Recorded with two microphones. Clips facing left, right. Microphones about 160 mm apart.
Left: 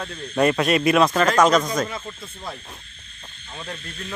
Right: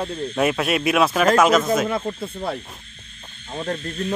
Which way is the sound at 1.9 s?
50° right (ahead or behind).